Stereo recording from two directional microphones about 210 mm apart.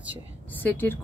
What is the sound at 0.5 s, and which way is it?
Speech, 10° left (ahead or behind).